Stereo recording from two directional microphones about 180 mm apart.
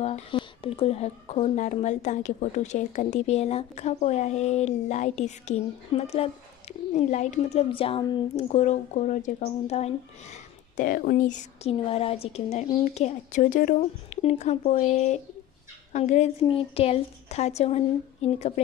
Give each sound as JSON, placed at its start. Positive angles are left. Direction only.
{"t": 0.0, "sound": "speech", "side_deg": 30}
{"t": 8.5, "sound": "speech", "side_deg": 40}
{"t": 10.8, "sound": "speech", "side_deg": 50}
{"t": 11.8, "sound": "speech", "side_deg": 35}